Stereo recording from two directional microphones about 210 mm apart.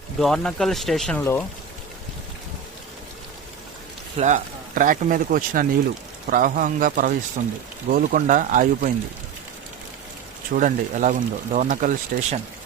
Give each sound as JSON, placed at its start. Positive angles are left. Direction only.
{"t": 0.2, "sound": "speech", "side_deg": 0}
{"t": 4.2, "sound": "speech", "side_deg": -35}
{"t": 10.5, "sound": "speech", "side_deg": -40}